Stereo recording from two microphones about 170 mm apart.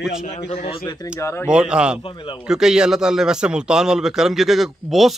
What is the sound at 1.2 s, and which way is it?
Speech, 15° left (ahead or behind).